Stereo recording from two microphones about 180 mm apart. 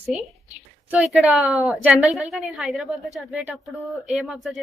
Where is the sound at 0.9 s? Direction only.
5° right (ahead or behind).